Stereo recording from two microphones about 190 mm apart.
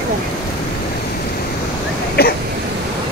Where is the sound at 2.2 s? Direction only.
55° left (ahead or behind).